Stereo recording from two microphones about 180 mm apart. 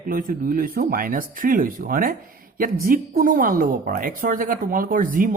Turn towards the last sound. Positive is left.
turn(degrees=-50)  # may be behind; listen again after turning